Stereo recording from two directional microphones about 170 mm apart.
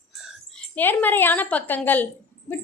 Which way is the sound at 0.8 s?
10° left (ahead or behind).